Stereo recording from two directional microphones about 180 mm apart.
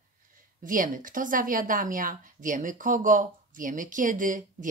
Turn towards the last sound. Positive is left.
turn(degrees=-45)  # may be behind; listen again after turning